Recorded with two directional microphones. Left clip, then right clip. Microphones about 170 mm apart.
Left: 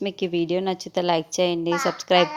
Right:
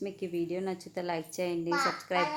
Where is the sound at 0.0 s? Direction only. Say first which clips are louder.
Left 10 dB; 45° left (ahead or behind).